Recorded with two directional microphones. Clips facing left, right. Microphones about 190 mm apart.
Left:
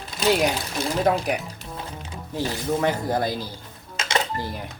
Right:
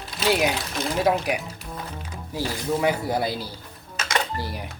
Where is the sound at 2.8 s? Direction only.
10° right (ahead or behind).